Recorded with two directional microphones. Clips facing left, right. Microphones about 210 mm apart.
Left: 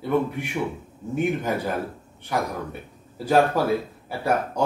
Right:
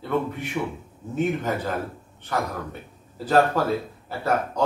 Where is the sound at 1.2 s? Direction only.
10° left (ahead or behind).